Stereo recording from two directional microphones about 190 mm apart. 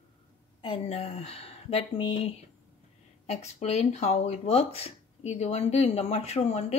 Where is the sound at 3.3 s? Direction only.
35° left (ahead or behind).